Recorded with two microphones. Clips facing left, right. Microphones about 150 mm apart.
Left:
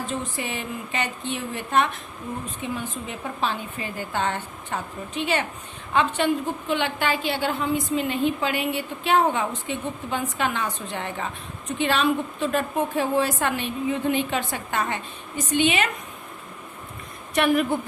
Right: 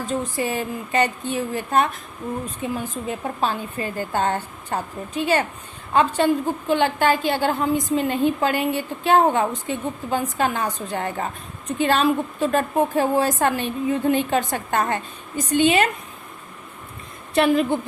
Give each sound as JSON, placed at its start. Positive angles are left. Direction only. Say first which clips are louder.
{"t": 0.0, "sound": "a woman's voice", "louder": "right 5 dB", "side_deg": -40}
{"t": 17.3, "sound": "a woman's voice", "louder": "right 3 dB", "side_deg": -25}